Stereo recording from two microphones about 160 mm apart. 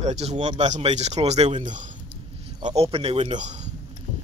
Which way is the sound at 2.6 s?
35° right (ahead or behind).